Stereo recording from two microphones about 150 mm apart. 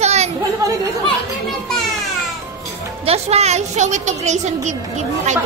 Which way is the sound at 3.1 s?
45° right (ahead or behind).